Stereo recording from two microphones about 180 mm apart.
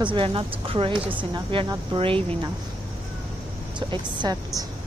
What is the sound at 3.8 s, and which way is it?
Speech, 25° right (ahead or behind).